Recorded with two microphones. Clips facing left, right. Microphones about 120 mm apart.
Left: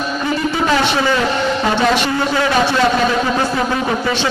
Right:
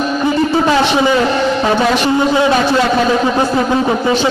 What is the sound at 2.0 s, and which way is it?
Speech, 20° right (ahead or behind).